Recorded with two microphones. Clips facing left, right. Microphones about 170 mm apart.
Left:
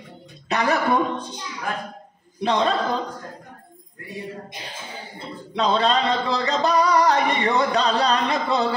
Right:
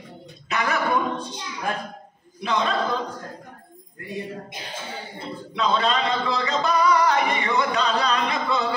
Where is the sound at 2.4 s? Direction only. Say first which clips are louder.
Left 4 dB; 35° left (ahead or behind).